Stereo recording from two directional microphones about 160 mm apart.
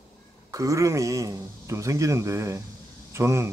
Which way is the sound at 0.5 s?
20° right (ahead or behind).